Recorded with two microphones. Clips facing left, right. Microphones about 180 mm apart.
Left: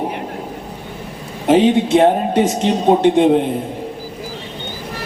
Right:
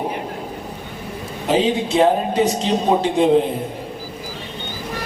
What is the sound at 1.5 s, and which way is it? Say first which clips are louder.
A man's voice: left 6 dB; 65° left (ahead or behind).